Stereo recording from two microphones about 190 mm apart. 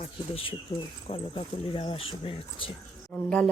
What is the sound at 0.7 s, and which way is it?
Speech, 20° left (ahead or behind).